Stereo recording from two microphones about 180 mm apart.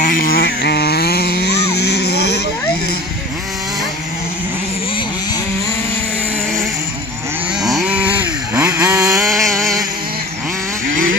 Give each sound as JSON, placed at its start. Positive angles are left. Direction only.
{"t": 0.0, "sound": "vehicle", "side_deg": 55}
{"t": 7.6, "sound": "chainsaw", "side_deg": -5}
{"t": 9.2, "sound": "a sound", "side_deg": 0}